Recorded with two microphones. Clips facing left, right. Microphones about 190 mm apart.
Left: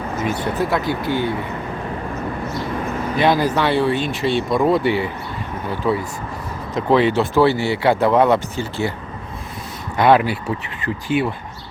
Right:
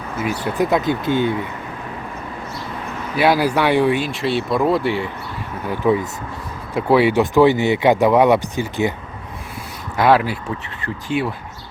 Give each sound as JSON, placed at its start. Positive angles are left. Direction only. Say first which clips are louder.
{"t": 0.2, "sound": "speech", "louder": "right 2 dB", "side_deg": -10}
{"t": 3.2, "sound": "speech", "louder": "right 1 dB", "side_deg": -10}
{"t": 4.1, "sound": "speech", "louder": "left 1 dB", "side_deg": 0}
{"t": 5.6, "sound": "speech", "louder": "right 3 dB", "side_deg": -15}
{"t": 10.0, "sound": "speech", "louder": "left 1 dB", "side_deg": 0}